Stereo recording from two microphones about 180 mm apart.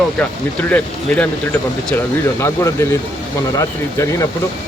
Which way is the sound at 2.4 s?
15° left (ahead or behind).